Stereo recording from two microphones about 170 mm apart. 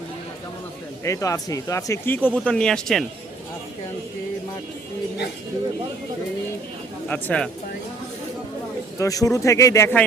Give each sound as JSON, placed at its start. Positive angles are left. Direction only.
{"t": 1.0, "sound": "speech", "side_deg": 20}
{"t": 7.1, "sound": "speech", "side_deg": 5}
{"t": 9.0, "sound": "speech", "side_deg": 20}